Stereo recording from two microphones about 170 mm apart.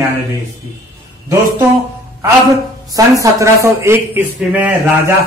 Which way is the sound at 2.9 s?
20° right (ahead or behind).